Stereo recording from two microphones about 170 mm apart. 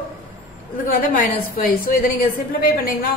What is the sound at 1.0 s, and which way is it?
A woman's voice, 55° left (ahead or behind).